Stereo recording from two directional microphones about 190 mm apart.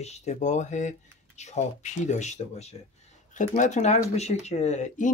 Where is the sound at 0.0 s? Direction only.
35° left (ahead or behind).